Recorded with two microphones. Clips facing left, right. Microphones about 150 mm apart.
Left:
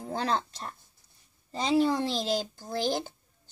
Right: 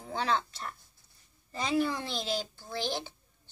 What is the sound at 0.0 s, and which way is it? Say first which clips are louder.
Speech: left 1 dB; 40° left (ahead or behind).